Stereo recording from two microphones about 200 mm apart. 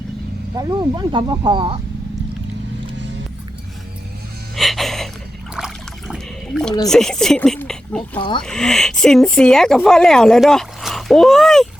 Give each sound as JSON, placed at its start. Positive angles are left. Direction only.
{"t": 0.5, "sound": "speech", "side_deg": -20}
{"t": 4.5, "sound": "music", "side_deg": 0}
{"t": 5.5, "sound": "trickle", "side_deg": 0}
{"t": 6.9, "sound": "speech", "side_deg": 5}